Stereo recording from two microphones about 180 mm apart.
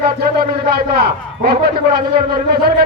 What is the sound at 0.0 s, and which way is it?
A man's voice, 55° right (ahead or behind).